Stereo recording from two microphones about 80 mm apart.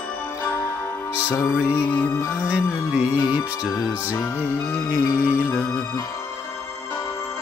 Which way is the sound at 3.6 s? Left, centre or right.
Centre.